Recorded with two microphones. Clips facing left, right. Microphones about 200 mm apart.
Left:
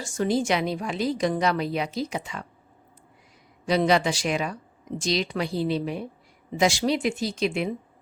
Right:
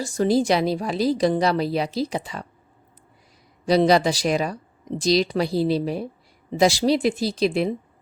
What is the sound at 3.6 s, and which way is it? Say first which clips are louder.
Speech: right 4 dB; 35° right (ahead or behind).